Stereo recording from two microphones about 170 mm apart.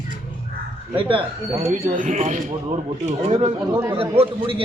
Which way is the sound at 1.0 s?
30° right (ahead or behind).